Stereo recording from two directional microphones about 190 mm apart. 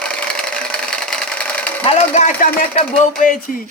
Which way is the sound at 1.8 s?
40° left (ahead or behind).